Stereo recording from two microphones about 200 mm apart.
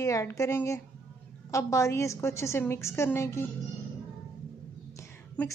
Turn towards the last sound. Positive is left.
turn(degrees=10)  # may be behind; listen again after turning